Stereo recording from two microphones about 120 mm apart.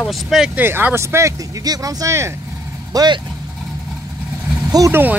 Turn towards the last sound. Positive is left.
turn(degrees=-25)  # may be behind; listen again after turning